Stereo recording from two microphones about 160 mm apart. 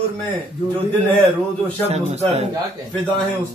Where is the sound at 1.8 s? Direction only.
40° right (ahead or behind).